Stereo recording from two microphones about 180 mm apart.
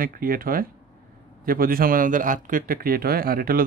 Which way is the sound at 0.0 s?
50° right (ahead or behind).